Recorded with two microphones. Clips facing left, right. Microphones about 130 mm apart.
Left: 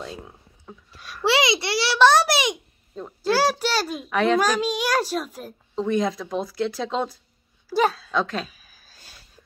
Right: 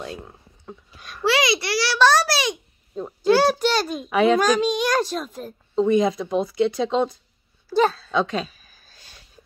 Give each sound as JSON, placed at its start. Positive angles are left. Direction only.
{"t": 0.7, "sound": "a child's voice", "side_deg": 5}
{"t": 1.2, "sound": "a child's voice", "side_deg": 25}
{"t": 3.2, "sound": "a child's voice", "side_deg": 5}
{"t": 7.7, "sound": "a sound", "side_deg": 10}